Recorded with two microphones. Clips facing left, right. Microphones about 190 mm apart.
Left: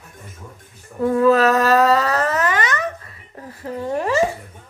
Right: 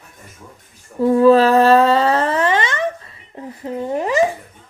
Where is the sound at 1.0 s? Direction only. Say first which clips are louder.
Right 4 dB; 30° right (ahead or behind).